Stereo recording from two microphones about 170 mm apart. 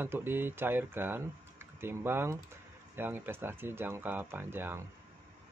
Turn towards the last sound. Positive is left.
turn(degrees=-15)  # may be behind; listen again after turning